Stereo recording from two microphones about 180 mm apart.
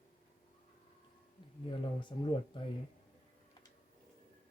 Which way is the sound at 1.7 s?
25° left (ahead or behind).